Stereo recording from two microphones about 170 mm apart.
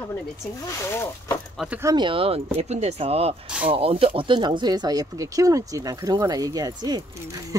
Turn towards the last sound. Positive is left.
turn(degrees=-25)  # may be behind; listen again after turning